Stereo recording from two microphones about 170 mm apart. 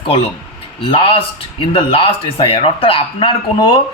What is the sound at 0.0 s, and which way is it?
A man's voice, 35° left (ahead or behind).